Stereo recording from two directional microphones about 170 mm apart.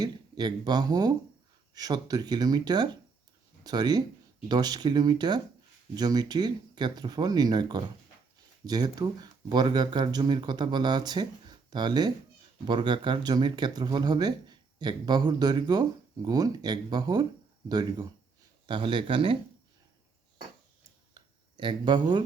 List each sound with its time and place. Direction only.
0.0 s speech: 25° right (ahead or behind)
21.6 s speech: 30° right (ahead or behind)